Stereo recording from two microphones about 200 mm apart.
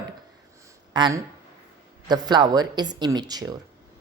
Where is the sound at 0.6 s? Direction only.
20° right (ahead or behind).